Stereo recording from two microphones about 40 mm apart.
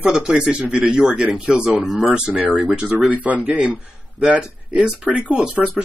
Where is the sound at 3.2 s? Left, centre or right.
Right.